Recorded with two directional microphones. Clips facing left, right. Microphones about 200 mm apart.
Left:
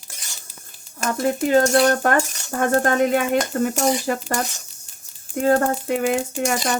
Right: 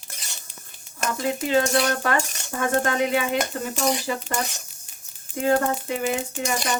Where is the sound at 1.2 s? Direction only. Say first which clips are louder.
Left 5 dB; 50° left (ahead or behind).